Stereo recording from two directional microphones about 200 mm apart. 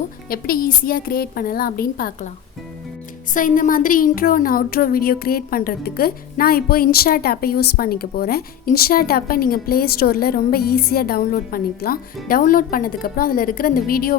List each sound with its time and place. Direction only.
0.3 s speech: 45° left (ahead or behind)
3.3 s speech: 40° left (ahead or behind)